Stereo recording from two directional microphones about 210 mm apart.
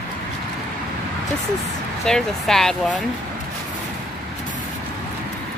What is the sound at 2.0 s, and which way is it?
Speech, centre (ahead or behind).